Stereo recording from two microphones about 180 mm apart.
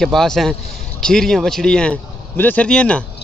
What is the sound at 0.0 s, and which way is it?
Speech, centre (ahead or behind).